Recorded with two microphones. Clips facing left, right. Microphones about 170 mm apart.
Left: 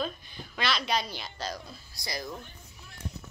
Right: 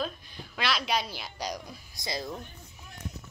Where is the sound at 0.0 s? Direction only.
Centre (ahead or behind).